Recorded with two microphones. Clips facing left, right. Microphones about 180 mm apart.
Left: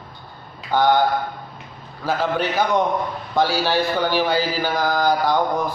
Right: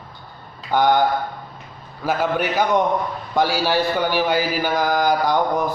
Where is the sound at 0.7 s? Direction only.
15° right (ahead or behind).